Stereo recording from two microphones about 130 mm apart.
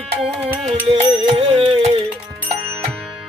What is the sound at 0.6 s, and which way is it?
Music, 45° right (ahead or behind).